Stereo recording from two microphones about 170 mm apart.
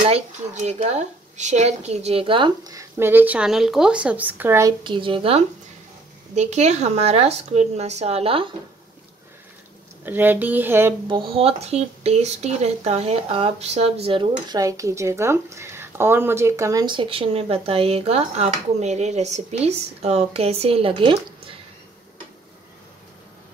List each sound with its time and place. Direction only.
0.6 s speech: 45° right (ahead or behind); by 4.7 s 15° right (ahead or behind)
4.8 s speech: 30° right (ahead or behind)
10.0 s speech: 10° right (ahead or behind)
11.1 s speech: 30° right (ahead or behind)